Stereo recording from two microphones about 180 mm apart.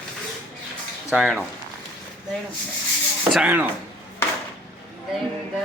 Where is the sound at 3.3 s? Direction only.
5° right (ahead or behind).